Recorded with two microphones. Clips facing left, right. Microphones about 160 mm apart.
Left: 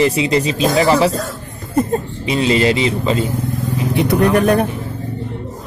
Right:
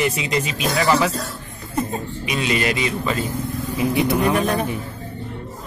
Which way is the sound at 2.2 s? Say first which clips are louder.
Left 7 dB; 30° left (ahead or behind).